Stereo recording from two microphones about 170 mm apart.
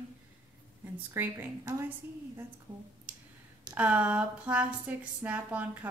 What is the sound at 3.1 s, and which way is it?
Clicking, 10° right (ahead or behind).